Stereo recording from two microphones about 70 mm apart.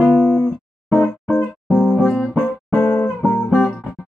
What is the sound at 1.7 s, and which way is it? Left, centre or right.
Music, centre.